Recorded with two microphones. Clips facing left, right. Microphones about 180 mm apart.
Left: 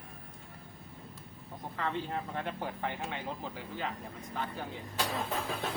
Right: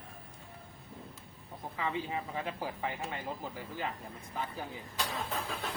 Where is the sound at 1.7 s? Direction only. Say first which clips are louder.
Even; 5° right (ahead or behind).